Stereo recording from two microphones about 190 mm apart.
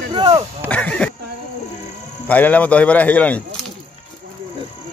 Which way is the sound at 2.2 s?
10° left (ahead or behind).